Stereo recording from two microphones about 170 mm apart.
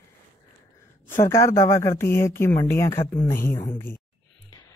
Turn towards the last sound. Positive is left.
turn(degrees=10)  # may be behind; listen again after turning